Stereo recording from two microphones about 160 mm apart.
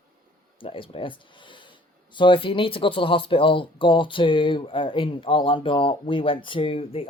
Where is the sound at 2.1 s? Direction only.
30° left (ahead or behind).